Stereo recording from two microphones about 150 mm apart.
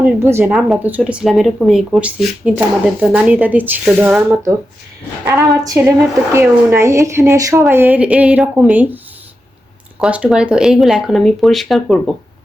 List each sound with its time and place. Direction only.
0.0 s speech: 15° right (ahead or behind)
10.0 s speech: 5° right (ahead or behind)